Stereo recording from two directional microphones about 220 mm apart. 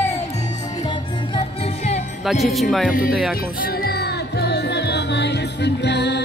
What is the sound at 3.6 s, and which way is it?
Music, 45° left (ahead or behind).